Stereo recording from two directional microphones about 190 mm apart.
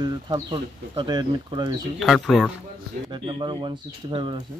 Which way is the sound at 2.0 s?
Centre (ahead or behind).